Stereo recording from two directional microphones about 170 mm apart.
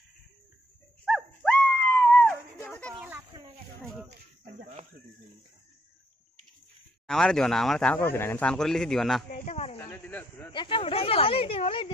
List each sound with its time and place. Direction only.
1.0 s dog: centre (ahead or behind)
2.6 s a sound: 10° left (ahead or behind)
2.9 s a sound: 5° right (ahead or behind)
7.1 s speech: 5° left (ahead or behind)
9.3 s speech: 40° left (ahead or behind)
9.8 s speech: 10° left (ahead or behind)
10.5 s speech: 30° left (ahead or behind)